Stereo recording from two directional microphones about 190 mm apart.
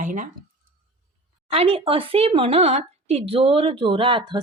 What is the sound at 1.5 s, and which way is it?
Speech, 30° right (ahead or behind).